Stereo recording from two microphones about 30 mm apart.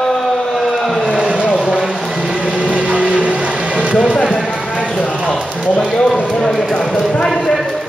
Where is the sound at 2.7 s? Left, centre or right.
Right.